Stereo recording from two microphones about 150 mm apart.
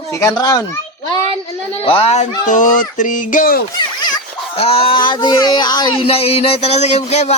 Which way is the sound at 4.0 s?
30° left (ahead or behind).